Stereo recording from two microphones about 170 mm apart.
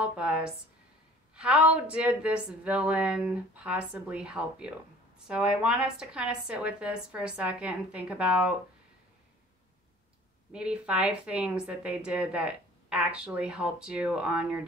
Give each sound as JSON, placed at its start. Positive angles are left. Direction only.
{"t": 0.0, "sound": "a woman's voice", "side_deg": -5}
{"t": 10.5, "sound": "a woman's voice", "side_deg": -5}